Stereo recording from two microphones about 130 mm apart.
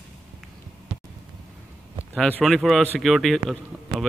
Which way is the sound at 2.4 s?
Centre (ahead or behind).